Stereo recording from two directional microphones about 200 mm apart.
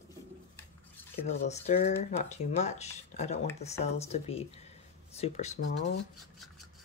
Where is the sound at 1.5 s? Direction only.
35° left (ahead or behind).